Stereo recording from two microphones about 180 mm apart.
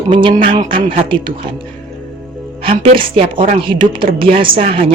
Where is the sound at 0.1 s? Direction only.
30° right (ahead or behind).